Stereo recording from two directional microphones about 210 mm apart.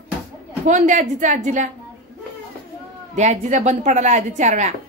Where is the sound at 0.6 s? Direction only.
35° right (ahead or behind).